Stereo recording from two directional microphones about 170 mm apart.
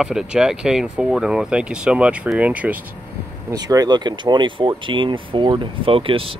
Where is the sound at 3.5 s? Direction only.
25° right (ahead or behind).